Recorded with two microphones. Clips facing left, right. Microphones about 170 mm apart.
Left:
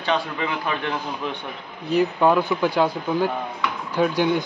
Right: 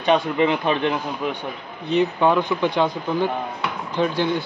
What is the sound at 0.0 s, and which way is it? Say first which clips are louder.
Speech: right 6 dB; 20° right (ahead or behind).